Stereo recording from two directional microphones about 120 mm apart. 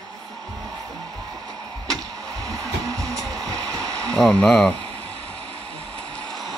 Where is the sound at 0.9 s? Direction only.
30° right (ahead or behind).